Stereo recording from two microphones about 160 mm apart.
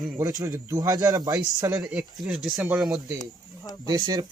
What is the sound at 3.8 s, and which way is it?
Speech, 25° right (ahead or behind).